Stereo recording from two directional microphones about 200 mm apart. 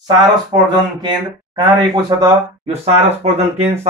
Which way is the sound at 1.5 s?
20° right (ahead or behind).